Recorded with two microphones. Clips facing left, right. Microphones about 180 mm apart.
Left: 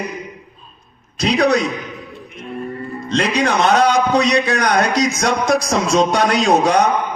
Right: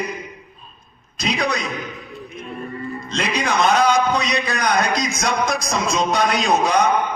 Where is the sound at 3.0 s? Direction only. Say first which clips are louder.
Left 6 dB; 70° left (ahead or behind).